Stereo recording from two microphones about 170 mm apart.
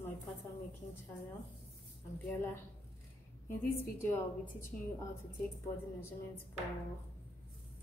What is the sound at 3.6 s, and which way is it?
Speech, 15° left (ahead or behind).